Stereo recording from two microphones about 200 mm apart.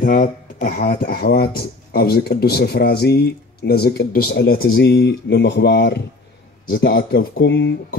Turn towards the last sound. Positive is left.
turn(degrees=60)  # may be behind; listen again after turning